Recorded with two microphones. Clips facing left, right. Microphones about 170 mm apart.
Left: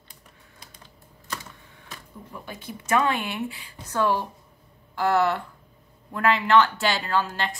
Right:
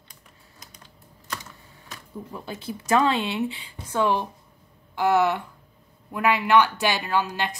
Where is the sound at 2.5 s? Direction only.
25° right (ahead or behind).